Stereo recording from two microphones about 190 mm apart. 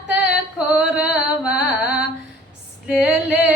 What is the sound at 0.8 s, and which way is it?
Carnatic music, 5° right (ahead or behind).